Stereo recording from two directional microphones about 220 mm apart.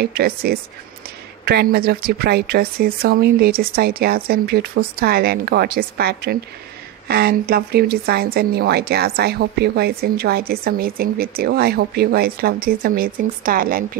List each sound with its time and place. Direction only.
0.0 s speech: 45° right (ahead or behind)